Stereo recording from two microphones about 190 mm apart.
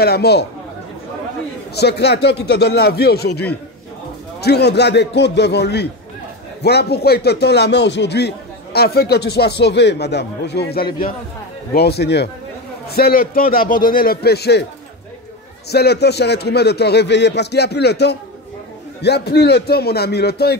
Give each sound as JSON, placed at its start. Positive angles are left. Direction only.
{"t": 0.0, "sound": "speech", "side_deg": 55}
{"t": 1.8, "sound": "a man's voice", "side_deg": 60}
{"t": 15.7, "sound": "speech", "side_deg": 60}